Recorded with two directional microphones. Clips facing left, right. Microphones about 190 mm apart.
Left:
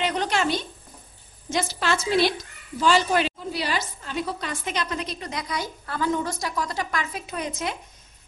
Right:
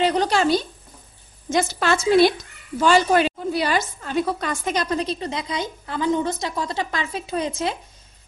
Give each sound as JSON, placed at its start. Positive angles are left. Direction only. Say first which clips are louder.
{"t": 0.0, "sound": "a woman's voice", "louder": "right 5 dB", "side_deg": -35}
{"t": 1.5, "sound": "a woman's voice", "louder": "right 5 dB", "side_deg": -50}